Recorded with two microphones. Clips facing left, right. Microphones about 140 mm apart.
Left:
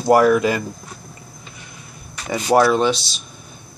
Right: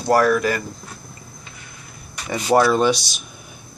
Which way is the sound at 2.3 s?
10° left (ahead or behind).